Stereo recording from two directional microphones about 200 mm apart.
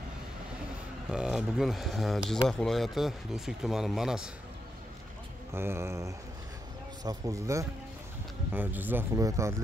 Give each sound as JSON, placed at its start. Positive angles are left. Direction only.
{"t": 1.1, "sound": "speech", "side_deg": 0}
{"t": 5.5, "sound": "speech", "side_deg": -10}